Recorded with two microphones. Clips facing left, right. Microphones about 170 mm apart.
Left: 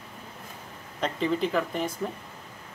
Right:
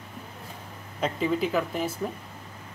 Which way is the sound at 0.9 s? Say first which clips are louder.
Right 1 dB; 5° right (ahead or behind).